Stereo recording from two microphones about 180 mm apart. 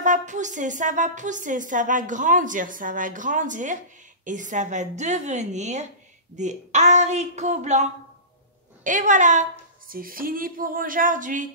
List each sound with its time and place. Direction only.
0.0 s a woman's voice: 45° right (ahead or behind)